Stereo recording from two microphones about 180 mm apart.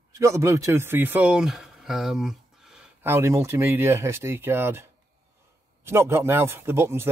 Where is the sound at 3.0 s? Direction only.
15° right (ahead or behind).